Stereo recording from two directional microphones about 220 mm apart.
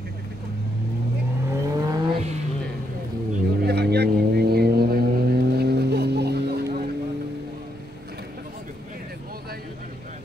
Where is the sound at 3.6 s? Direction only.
45° right (ahead or behind).